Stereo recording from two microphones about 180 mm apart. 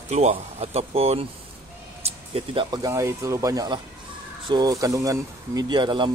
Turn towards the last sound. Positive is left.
turn(degrees=-25)  # may be behind; listen again after turning